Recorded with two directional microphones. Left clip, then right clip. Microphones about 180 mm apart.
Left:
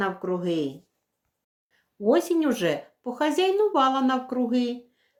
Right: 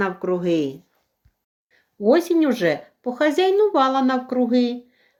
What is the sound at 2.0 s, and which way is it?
Speech, 25° right (ahead or behind).